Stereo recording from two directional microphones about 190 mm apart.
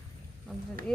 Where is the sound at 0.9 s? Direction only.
5° left (ahead or behind).